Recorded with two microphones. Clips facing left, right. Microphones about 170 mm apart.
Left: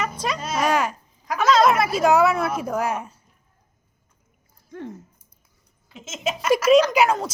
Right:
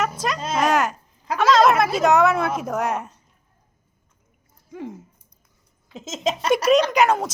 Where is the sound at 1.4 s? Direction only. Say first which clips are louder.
Right 1 dB; centre (ahead or behind).